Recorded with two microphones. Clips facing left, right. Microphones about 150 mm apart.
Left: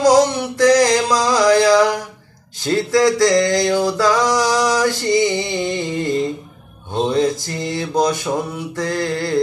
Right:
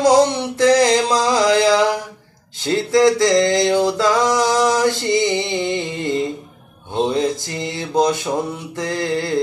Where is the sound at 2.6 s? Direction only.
20° right (ahead or behind).